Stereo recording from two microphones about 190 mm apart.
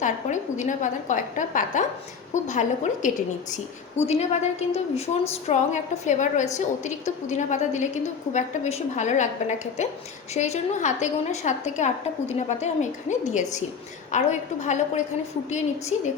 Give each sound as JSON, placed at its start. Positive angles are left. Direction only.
{"t": 0.0, "sound": "a woman's voice", "side_deg": 40}